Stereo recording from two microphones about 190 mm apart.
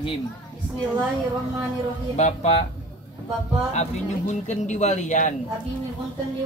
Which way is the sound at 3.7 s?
35° left (ahead or behind).